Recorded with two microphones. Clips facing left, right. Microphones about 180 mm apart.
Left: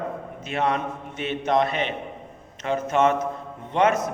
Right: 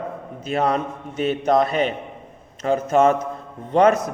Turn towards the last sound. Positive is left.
turn(degrees=-35)  # may be behind; listen again after turning